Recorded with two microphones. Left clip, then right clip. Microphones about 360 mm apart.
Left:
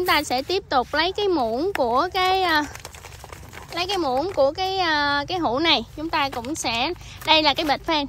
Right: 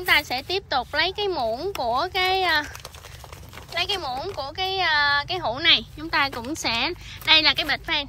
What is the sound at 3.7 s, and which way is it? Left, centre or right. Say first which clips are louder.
Speech: left 3 dB; centre.